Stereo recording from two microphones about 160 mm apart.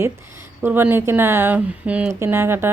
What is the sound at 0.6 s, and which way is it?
Speech, 15° right (ahead or behind).